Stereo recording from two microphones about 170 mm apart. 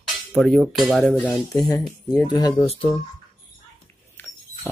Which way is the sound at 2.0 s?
20° left (ahead or behind).